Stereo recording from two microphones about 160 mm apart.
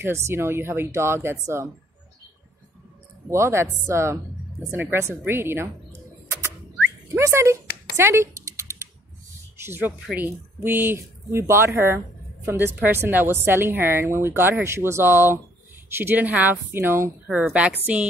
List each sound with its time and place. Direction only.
0.0 s a woman's voice: 15° right (ahead or behind)
3.3 s a woman's voice: 15° right (ahead or behind)
7.1 s a woman's voice: 15° right (ahead or behind)
8.0 s a sound: 15° right (ahead or behind)
9.6 s a woman's voice: 15° right (ahead or behind)